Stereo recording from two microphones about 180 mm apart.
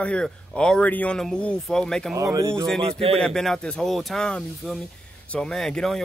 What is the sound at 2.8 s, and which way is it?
Speech, 30° right (ahead or behind).